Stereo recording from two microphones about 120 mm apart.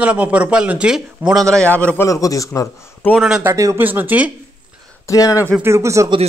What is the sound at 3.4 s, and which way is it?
Speech, 25° right (ahead or behind).